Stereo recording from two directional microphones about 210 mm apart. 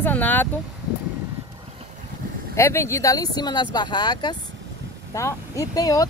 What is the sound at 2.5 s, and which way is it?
Speech, 15° left (ahead or behind).